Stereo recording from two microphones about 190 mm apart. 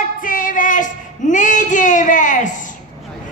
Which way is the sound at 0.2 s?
45° left (ahead or behind).